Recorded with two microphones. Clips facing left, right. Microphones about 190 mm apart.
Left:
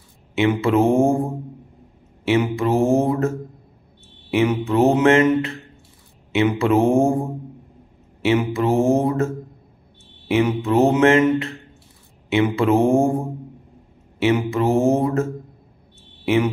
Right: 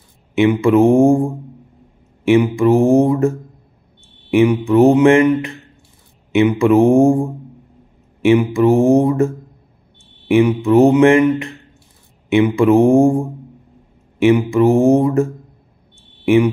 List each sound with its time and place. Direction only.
0.3 s mantra: 15° right (ahead or behind)
2.2 s mantra: 15° right (ahead or behind)
4.4 s mantra: 15° right (ahead or behind)
8.3 s mantra: 15° right (ahead or behind)
10.3 s mantra: 15° right (ahead or behind)
14.2 s mantra: 15° right (ahead or behind)
16.3 s speech: 15° right (ahead or behind)